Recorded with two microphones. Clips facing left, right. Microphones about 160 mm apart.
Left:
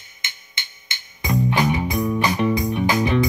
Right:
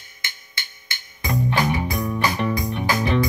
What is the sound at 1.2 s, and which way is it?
Music, 15° left (ahead or behind).